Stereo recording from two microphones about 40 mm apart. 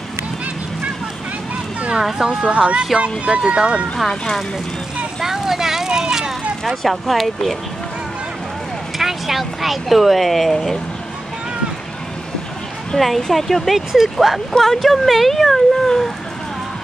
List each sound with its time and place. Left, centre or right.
2.1 s speech: centre
5.2 s a sound: centre
6.6 s speech: centre
8.9 s speech: centre
12.9 s speech: centre